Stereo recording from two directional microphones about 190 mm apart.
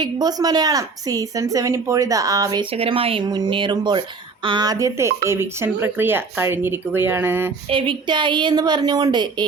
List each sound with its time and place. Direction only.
0.0 s a woman's voice: 20° right (ahead or behind)
2.7 s a woman's voice: 30° right (ahead or behind); by 7.5 s 10° right (ahead or behind)
7.7 s a woman's voice: 25° right (ahead or behind)